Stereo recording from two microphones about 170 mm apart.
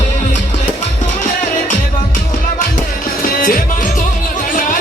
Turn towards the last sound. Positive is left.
turn(degrees=55)  # may be behind; listen again after turning